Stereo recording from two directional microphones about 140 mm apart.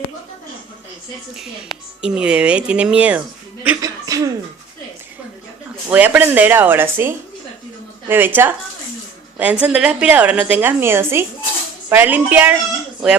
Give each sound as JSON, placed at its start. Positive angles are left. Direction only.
{"t": 1.4, "sound": "speech", "side_deg": 0}
{"t": 3.8, "sound": "cough", "side_deg": -25}
{"t": 5.9, "sound": "speech", "side_deg": -10}
{"t": 8.1, "sound": "speech", "side_deg": -15}